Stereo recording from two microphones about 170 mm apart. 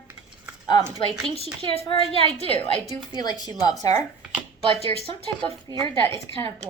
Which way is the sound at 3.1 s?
25° left (ahead or behind).